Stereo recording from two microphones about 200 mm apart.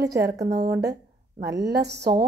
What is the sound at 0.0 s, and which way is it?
Speech, 55° right (ahead or behind).